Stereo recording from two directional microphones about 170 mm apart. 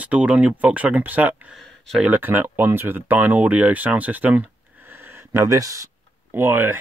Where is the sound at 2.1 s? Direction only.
10° right (ahead or behind).